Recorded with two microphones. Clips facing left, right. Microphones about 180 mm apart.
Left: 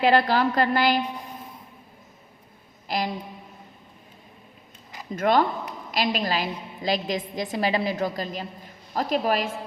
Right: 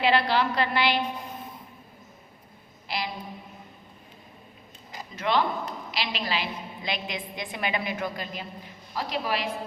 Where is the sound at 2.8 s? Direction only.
45° left (ahead or behind).